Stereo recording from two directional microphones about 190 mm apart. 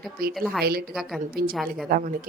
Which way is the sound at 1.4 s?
55° right (ahead or behind).